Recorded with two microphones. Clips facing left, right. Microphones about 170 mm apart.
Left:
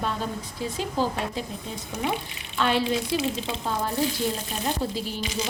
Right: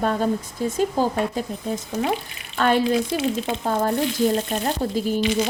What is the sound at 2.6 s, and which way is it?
Frying, 45° right (ahead or behind).